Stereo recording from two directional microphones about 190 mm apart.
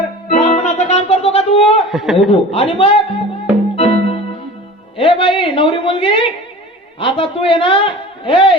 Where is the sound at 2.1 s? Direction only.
30° left (ahead or behind).